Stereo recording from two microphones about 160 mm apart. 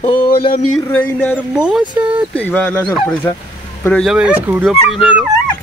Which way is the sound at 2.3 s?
10° left (ahead or behind).